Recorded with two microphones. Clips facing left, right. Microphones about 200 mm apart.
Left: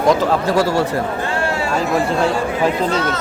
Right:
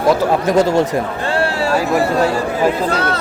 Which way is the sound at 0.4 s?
20° right (ahead or behind).